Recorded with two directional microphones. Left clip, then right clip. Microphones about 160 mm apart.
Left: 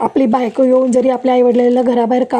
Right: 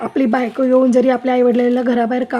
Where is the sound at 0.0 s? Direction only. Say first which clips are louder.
Left 4 dB; 15° left (ahead or behind).